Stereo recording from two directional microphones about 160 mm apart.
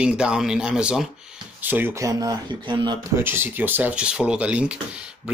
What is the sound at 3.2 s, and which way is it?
Speech, 15° right (ahead or behind).